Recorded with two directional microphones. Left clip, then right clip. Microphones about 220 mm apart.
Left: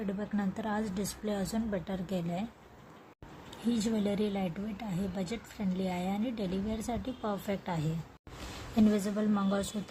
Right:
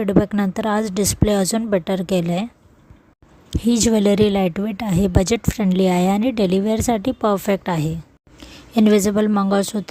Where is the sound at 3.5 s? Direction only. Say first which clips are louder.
Right 16 dB; 45° right (ahead or behind).